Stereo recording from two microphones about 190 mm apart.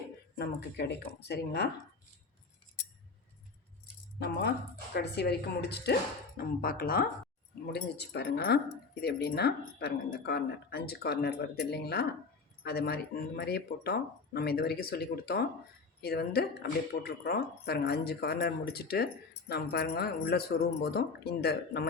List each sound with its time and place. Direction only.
0.3 s speech: 60° left (ahead or behind)
4.2 s speech: 60° left (ahead or behind)